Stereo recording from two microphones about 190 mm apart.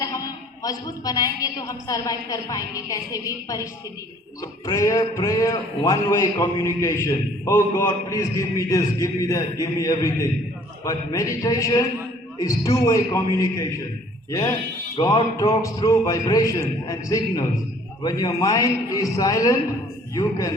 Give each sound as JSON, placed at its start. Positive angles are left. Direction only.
{"t": 0.6, "sound": "a woman's voice", "side_deg": 20}